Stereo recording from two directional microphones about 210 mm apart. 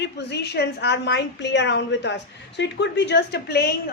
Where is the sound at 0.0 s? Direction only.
55° left (ahead or behind).